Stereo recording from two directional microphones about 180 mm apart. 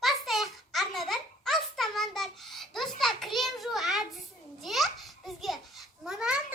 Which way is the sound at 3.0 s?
Centre (ahead or behind).